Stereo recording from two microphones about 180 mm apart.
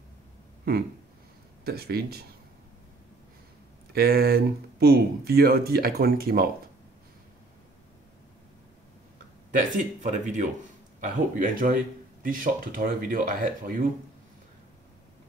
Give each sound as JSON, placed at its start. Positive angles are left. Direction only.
{"t": 1.6, "sound": "speech", "side_deg": -60}
{"t": 3.9, "sound": "speech", "side_deg": -60}
{"t": 9.5, "sound": "speech", "side_deg": -45}